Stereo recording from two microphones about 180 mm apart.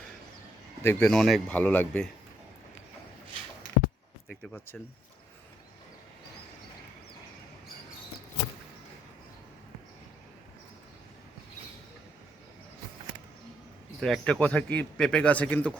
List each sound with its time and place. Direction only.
0.8 s speech: 10° left (ahead or behind)
4.3 s speech: 10° left (ahead or behind)
14.0 s speech: 5° left (ahead or behind)